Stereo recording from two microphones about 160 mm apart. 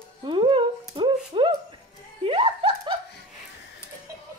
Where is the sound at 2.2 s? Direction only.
35° right (ahead or behind).